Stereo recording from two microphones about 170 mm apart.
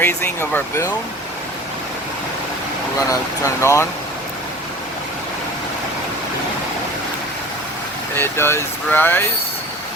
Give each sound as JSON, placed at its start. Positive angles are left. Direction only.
{"t": 0.0, "sound": "speech", "side_deg": 15}
{"t": 3.1, "sound": "speech", "side_deg": 15}
{"t": 8.1, "sound": "speech", "side_deg": 15}